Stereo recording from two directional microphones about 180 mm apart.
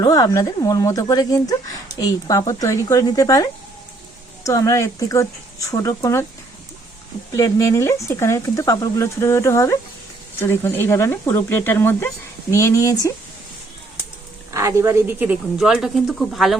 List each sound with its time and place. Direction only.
0.0 s speech: 20° left (ahead or behind)
7.3 s speech: 20° left (ahead or behind)
14.5 s a woman's voice: 15° right (ahead or behind); by 16.6 s centre (ahead or behind)